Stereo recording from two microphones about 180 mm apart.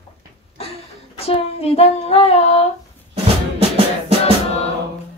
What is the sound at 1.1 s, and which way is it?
Child singing, 35° left (ahead or behind).